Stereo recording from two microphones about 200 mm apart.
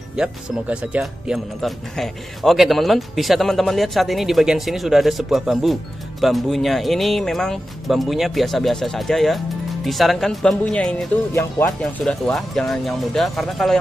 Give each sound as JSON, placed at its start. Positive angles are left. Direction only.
{"t": 0.1, "sound": "speech", "side_deg": -5}